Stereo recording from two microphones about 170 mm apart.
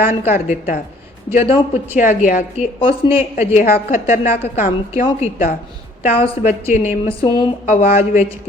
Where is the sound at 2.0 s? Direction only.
50° left (ahead or behind).